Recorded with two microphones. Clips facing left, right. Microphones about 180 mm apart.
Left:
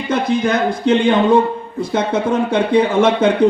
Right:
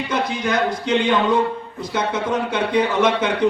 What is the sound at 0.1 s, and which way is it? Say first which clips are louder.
A man's voice: left 7 dB; 50° left (ahead or behind).